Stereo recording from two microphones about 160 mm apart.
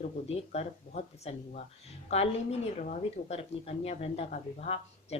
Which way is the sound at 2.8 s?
40° left (ahead or behind).